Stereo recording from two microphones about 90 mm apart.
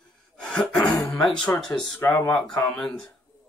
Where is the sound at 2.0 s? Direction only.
20° left (ahead or behind).